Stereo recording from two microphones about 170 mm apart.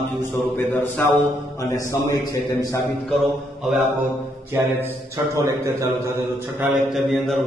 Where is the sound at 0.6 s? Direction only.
15° left (ahead or behind).